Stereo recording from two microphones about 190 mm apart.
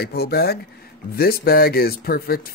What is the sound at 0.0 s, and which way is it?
Speech, 55° left (ahead or behind).